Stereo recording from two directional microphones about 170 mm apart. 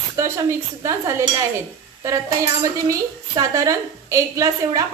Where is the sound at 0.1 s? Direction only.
15° right (ahead or behind).